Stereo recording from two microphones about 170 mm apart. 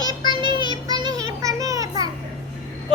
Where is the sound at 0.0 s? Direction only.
25° right (ahead or behind).